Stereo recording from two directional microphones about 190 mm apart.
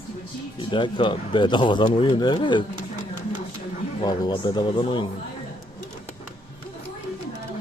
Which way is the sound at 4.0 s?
20° left (ahead or behind).